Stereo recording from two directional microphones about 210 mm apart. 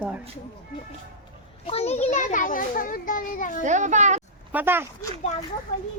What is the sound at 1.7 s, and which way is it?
A child's voice, 30° left (ahead or behind).